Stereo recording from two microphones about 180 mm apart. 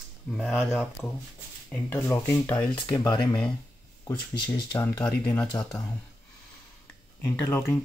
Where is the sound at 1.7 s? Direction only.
10° left (ahead or behind).